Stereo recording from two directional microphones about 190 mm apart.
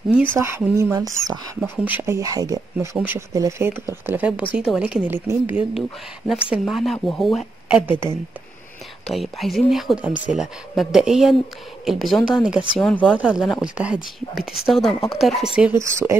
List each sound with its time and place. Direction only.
0.4 s speech: 15° right (ahead or behind)
6.6 s a woman's voice: centre (ahead or behind)
9.0 s a woman's voice: centre (ahead or behind)
15.8 s speech: 15° right (ahead or behind)